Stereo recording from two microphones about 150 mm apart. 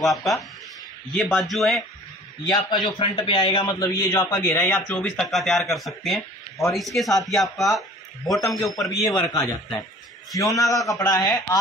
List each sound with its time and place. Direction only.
0.0 s speech: centre (ahead or behind)
2.5 s a man's voice: 30° left (ahead or behind)
4.1 s a man's voice: 15° left (ahead or behind); by 7.7 s centre (ahead or behind)
8.8 s speech: centre (ahead or behind)
9.3 s a man's voice: 25° left (ahead or behind)